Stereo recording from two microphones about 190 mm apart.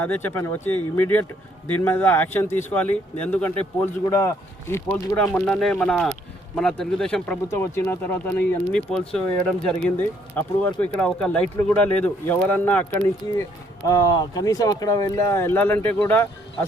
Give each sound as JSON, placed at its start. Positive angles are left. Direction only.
{"t": 0.0, "sound": "speech", "side_deg": 10}
{"t": 13.8, "sound": "speech", "side_deg": 20}